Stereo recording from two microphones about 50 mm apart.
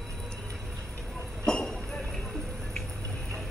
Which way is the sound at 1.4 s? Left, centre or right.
Centre.